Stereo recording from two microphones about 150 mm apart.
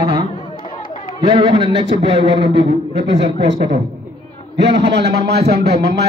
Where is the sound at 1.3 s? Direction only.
30° right (ahead or behind).